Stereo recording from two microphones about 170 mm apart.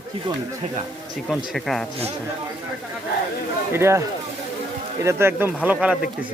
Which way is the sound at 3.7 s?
15° right (ahead or behind).